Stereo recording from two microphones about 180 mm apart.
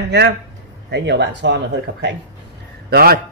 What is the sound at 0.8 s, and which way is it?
Speech, 70° right (ahead or behind).